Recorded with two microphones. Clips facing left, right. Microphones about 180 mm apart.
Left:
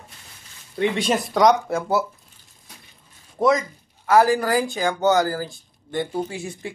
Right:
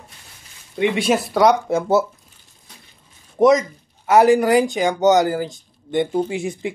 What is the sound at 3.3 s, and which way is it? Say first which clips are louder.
Speech: right 5 dB; 20° right (ahead or behind).